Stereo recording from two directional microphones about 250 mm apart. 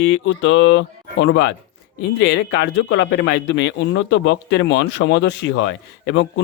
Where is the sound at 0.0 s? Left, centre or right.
Left.